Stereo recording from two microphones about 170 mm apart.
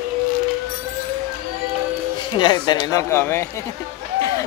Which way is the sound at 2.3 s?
25° left (ahead or behind).